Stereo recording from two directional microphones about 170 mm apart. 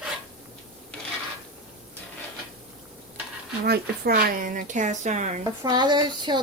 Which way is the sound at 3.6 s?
65° right (ahead or behind).